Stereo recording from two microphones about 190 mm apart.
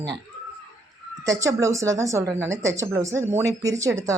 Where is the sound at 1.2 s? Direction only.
15° right (ahead or behind).